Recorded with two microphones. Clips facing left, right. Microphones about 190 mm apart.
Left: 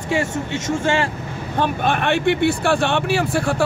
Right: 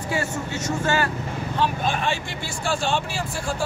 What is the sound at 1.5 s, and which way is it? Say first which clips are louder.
Speech: left 5 dB; 60° left (ahead or behind).